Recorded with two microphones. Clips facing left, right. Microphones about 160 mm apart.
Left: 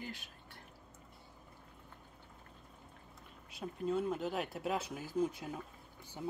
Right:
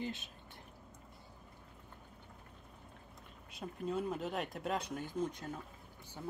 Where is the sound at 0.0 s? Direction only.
20° right (ahead or behind).